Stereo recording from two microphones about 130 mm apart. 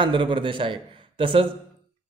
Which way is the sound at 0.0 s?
40° right (ahead or behind).